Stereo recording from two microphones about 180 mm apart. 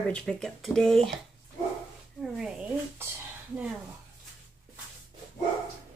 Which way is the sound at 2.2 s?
Centre (ahead or behind).